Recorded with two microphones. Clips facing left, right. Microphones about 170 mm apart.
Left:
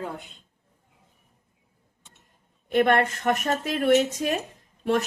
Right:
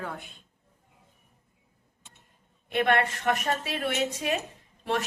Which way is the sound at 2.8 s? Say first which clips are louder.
Left 4 dB; 40° left (ahead or behind).